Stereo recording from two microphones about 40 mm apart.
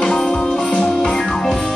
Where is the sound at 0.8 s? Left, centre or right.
Centre.